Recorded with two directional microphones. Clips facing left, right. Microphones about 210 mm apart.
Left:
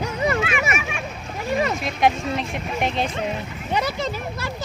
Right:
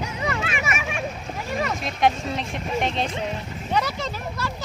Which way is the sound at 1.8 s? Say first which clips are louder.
Left 2 dB; 5° left (ahead or behind).